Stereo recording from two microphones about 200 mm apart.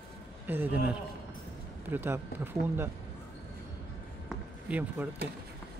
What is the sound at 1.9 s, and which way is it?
Speech, 10° right (ahead or behind).